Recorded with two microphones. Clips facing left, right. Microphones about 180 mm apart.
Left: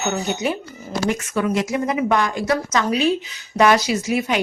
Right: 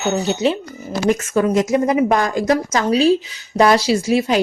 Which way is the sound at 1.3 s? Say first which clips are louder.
Right 6 dB; 40° right (ahead or behind).